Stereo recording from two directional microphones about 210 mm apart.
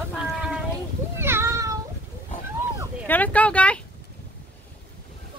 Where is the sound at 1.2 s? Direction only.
10° right (ahead or behind).